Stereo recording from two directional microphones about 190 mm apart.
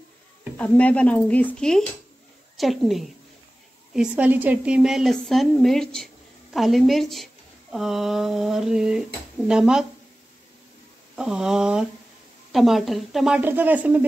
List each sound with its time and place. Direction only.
0.6 s a woman's voice: 5° left (ahead or behind)
11.1 s a woman's voice: 5° right (ahead or behind)